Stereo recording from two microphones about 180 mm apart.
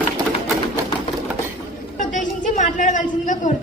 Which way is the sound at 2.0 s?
45° left (ahead or behind).